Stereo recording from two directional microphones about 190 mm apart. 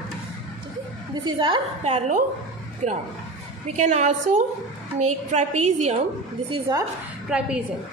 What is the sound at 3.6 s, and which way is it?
A woman's voice, 35° right (ahead or behind).